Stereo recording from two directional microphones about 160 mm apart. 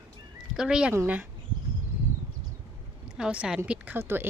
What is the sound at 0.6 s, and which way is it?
Speech, 5° right (ahead or behind).